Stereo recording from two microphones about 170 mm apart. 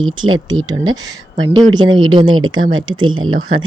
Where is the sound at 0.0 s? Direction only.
25° right (ahead or behind).